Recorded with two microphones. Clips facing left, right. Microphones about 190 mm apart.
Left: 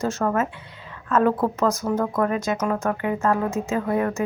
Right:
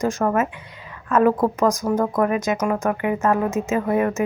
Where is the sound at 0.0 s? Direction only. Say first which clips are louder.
Right 2 dB; 15° right (ahead or behind).